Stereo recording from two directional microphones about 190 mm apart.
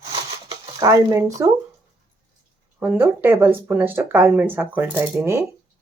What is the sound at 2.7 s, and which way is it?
Speech, 10° right (ahead or behind).